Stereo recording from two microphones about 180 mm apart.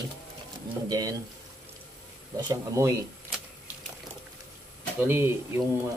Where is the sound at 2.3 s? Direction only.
20° right (ahead or behind).